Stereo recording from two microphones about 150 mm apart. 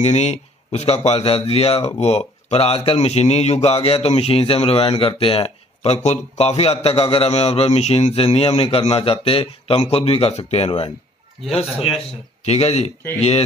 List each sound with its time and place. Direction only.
0.0 s a man's voice: 45° left (ahead or behind)
12.4 s speech: 45° left (ahead or behind)